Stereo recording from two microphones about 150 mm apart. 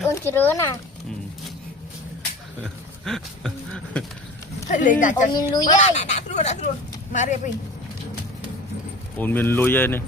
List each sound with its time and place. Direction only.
0.0 s speech: 15° left (ahead or behind)
3.0 s a sound: 5° left (ahead or behind)
4.7 s speech: 60° left (ahead or behind)
5.3 s speech: 25° left (ahead or behind)
5.6 s speech: 50° left (ahead or behind)
9.1 s speech: 10° left (ahead or behind)